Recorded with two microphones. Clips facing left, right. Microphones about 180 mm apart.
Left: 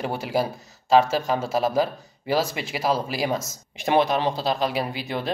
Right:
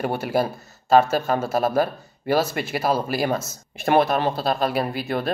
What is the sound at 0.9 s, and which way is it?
Speech, 55° right (ahead or behind).